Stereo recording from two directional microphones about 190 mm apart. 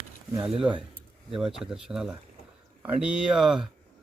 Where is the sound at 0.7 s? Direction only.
10° right (ahead or behind).